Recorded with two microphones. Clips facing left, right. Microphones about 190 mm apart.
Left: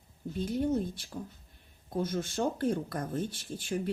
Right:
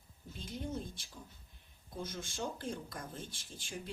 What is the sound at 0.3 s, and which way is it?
Speech, 70° left (ahead or behind).